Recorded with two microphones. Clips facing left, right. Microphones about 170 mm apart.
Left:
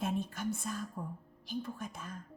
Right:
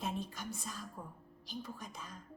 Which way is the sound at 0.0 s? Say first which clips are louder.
Left 5 dB; 55° left (ahead or behind).